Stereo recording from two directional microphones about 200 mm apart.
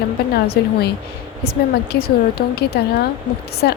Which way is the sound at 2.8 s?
50° left (ahead or behind).